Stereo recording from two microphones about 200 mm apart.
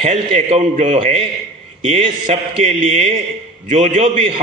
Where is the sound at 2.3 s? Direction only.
35° right (ahead or behind).